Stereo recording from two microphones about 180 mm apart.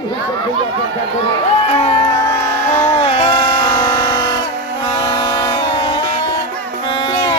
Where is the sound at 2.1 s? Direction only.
20° left (ahead or behind).